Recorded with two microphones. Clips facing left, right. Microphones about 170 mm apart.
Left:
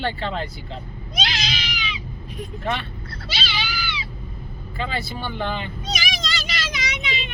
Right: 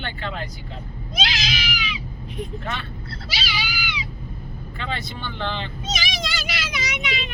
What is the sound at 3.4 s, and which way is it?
Cat, 10° right (ahead or behind).